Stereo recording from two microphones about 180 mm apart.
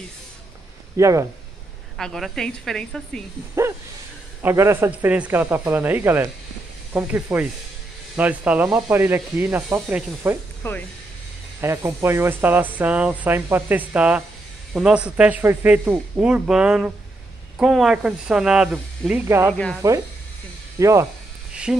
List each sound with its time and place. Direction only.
0.9 s a man's voice: 15° right (ahead or behind)
2.0 s speech: centre (ahead or behind)
3.6 s a man's voice: 15° right (ahead or behind)
11.6 s a man's voice: 15° right (ahead or behind)
19.5 s speech: 5° left (ahead or behind)
20.8 s a man's voice: 15° right (ahead or behind)
21.7 s a man's voice: 5° right (ahead or behind)